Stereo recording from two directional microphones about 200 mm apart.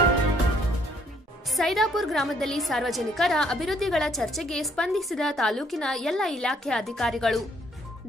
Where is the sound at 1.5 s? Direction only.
Centre (ahead or behind).